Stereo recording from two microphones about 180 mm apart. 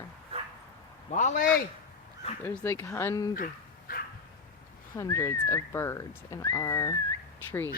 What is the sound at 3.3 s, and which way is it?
Dog, 55° left (ahead or behind).